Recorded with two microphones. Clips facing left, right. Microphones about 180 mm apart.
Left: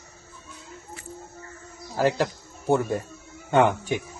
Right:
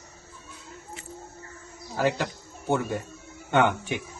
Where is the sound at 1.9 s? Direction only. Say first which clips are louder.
Left 3 dB; 35° left (ahead or behind).